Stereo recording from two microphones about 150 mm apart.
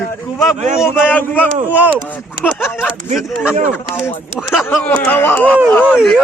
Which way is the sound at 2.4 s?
10° left (ahead or behind).